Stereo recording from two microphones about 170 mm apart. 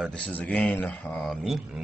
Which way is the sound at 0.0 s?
5° left (ahead or behind).